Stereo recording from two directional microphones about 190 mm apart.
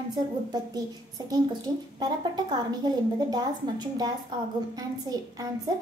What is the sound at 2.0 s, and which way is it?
A woman's voice, 20° right (ahead or behind).